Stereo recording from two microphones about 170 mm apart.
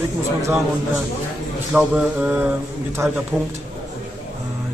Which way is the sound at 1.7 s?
5° right (ahead or behind).